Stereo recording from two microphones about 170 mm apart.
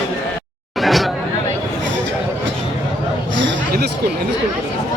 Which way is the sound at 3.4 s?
80° right.